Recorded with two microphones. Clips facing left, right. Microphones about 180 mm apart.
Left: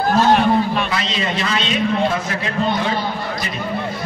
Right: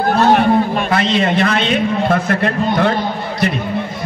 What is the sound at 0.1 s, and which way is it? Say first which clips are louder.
A man's voice: right 2 dB; 60° right (ahead or behind).